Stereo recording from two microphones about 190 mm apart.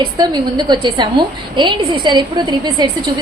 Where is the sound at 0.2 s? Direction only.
20° right (ahead or behind).